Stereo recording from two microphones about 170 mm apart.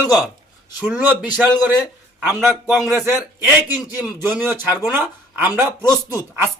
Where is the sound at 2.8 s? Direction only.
15° right (ahead or behind).